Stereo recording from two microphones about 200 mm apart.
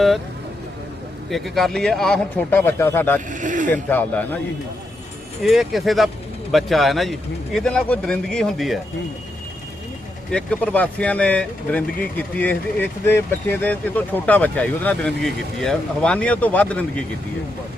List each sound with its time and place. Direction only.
1.3 s a man's voice: centre (ahead or behind)
3.2 s vehicle: 40° right (ahead or behind)
3.7 s speech: 10° left (ahead or behind)
5.4 s a man's voice: centre (ahead or behind)
10.3 s speech: 5° left (ahead or behind)